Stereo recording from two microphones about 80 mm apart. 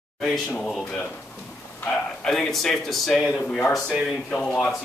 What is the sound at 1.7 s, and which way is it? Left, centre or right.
Speech, centre.